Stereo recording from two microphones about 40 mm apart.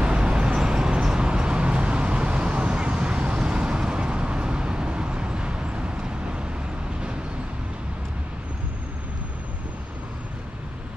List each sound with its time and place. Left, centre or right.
0.0 s vehicle: right